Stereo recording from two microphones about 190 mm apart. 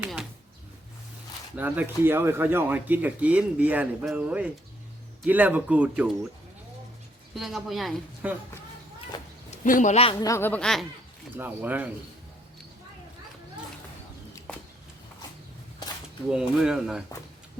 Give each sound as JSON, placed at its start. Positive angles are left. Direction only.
{"t": 1.5, "sound": "speech", "side_deg": -10}
{"t": 7.3, "sound": "speech", "side_deg": 0}
{"t": 9.1, "sound": "a sound", "side_deg": 20}
{"t": 9.5, "sound": "a man's voice", "side_deg": 40}
{"t": 11.3, "sound": "speech", "side_deg": -10}
{"t": 16.3, "sound": "speech", "side_deg": -5}